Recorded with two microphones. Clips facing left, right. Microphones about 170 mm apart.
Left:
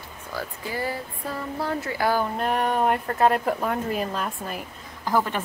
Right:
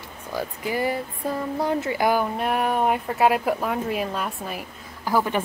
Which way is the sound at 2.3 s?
5° right (ahead or behind).